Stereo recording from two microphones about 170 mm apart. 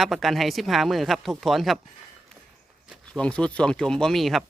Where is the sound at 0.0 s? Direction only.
Centre (ahead or behind).